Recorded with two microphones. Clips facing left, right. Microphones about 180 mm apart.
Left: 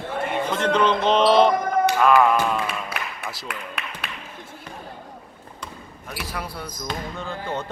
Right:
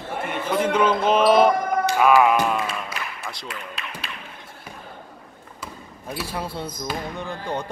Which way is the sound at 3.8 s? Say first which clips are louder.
Left 2 dB; 60° left (ahead or behind).